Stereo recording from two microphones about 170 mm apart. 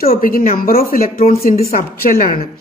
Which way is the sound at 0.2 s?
55° left (ahead or behind).